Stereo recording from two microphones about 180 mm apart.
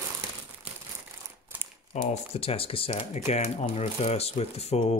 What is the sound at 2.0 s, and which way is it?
Speech, 35° left (ahead or behind).